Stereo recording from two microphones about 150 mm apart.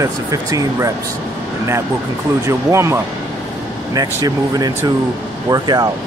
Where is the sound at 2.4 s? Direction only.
20° right (ahead or behind).